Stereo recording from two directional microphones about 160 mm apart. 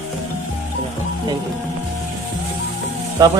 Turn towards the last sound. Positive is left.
turn(degrees=-25)  # may be behind; listen again after turning